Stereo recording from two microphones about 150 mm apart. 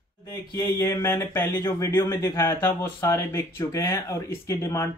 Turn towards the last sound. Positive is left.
turn(degrees=15)  # may be behind; listen again after turning